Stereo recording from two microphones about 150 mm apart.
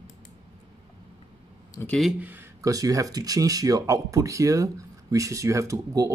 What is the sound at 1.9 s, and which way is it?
Speech, centre (ahead or behind).